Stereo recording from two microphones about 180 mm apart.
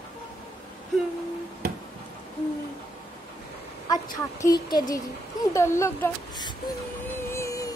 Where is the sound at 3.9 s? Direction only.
20° left (ahead or behind).